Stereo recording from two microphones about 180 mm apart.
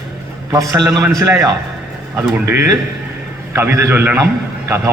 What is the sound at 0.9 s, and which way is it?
A man's voice, 20° right (ahead or behind).